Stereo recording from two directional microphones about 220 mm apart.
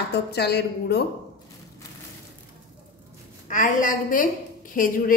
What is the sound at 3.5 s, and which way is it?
A woman's voice, 35° left (ahead or behind).